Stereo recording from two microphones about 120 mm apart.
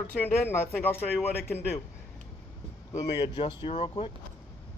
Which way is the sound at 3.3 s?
45° left (ahead or behind).